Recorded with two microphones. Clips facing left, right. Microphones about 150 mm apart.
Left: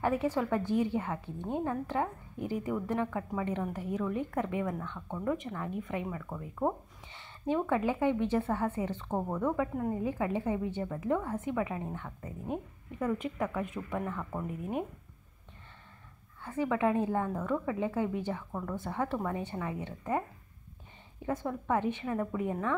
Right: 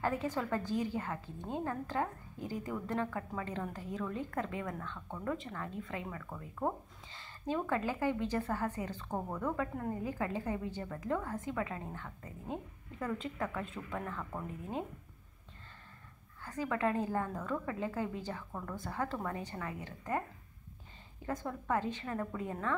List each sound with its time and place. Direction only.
0.0 s a woman's voice: 15° left (ahead or behind)
16.4 s a woman's voice: 20° left (ahead or behind)
21.3 s a woman's voice: 15° left (ahead or behind)